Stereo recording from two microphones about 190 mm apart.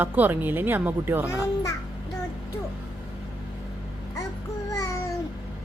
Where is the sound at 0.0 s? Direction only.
10° right (ahead or behind).